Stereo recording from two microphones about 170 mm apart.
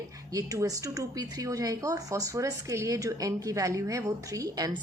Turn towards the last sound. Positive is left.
turn(degrees=-20)  # may be behind; listen again after turning